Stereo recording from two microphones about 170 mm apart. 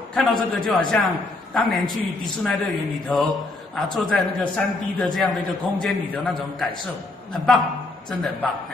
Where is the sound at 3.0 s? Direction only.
Centre (ahead or behind).